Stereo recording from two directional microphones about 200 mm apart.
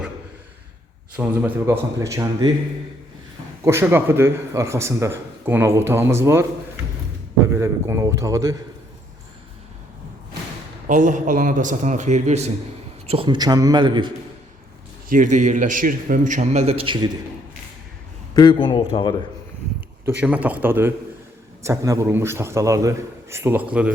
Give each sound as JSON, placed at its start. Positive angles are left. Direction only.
{"t": 1.1, "sound": "a man's voice", "side_deg": -10}
{"t": 3.6, "sound": "a man's voice", "side_deg": -15}
{"t": 7.4, "sound": "a man's voice", "side_deg": -15}
{"t": 10.8, "sound": "a man's voice", "side_deg": -40}
{"t": 15.1, "sound": "a man's voice", "side_deg": -40}
{"t": 18.3, "sound": "a man's voice", "side_deg": 20}
{"t": 20.2, "sound": "a man's voice", "side_deg": -5}